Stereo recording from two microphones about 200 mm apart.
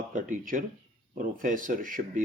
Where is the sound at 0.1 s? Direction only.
40° right (ahead or behind).